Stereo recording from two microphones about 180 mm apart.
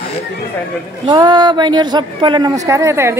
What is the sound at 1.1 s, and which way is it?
A man's voice, 25° right (ahead or behind).